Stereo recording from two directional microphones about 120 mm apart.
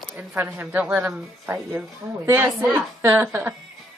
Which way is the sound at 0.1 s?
10° right (ahead or behind).